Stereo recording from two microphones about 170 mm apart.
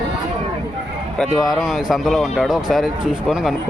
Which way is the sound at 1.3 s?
Centre (ahead or behind).